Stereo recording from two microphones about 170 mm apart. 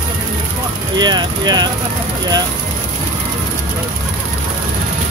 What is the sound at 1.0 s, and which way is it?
Speech, 25° right (ahead or behind).